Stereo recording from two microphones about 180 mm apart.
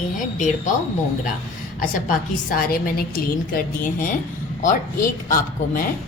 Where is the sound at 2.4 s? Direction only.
55° left (ahead or behind).